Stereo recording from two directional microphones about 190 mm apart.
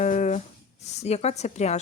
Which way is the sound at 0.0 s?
40° left (ahead or behind).